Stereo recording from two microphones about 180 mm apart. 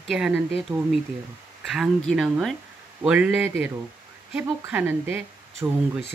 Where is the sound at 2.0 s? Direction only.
Centre (ahead or behind).